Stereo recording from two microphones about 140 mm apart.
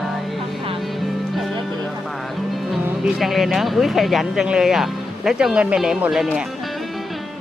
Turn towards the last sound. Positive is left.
turn(degrees=-5)  # may be behind; listen again after turning